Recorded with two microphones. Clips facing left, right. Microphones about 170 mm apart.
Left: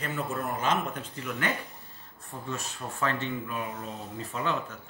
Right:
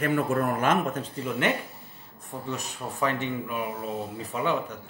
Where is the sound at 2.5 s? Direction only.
15° right (ahead or behind).